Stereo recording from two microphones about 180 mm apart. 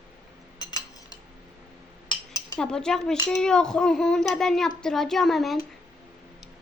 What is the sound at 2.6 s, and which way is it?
Speech, 5° left (ahead or behind).